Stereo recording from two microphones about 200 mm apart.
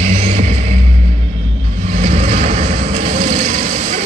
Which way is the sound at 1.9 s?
35° right (ahead or behind).